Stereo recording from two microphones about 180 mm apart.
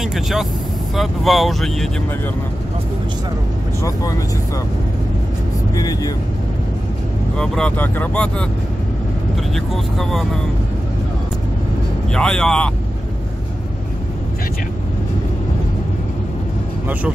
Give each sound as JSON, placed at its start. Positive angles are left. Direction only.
{"t": 0.0, "sound": "speech", "side_deg": 0}
{"t": 3.8, "sound": "speech", "side_deg": 20}
{"t": 5.8, "sound": "speech", "side_deg": 20}
{"t": 7.3, "sound": "speech", "side_deg": 5}
{"t": 9.9, "sound": "speech", "side_deg": 0}
{"t": 12.1, "sound": "speech", "side_deg": 5}